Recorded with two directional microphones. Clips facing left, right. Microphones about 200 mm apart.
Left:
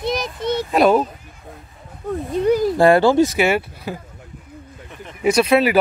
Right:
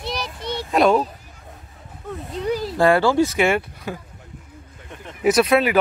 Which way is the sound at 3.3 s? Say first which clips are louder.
Left 1 dB; 5° left (ahead or behind).